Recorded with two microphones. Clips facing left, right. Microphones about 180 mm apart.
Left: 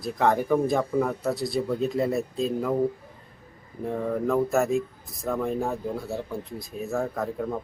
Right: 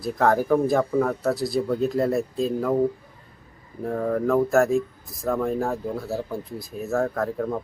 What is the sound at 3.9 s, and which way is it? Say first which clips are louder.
Speech: right 3 dB; centre (ahead or behind).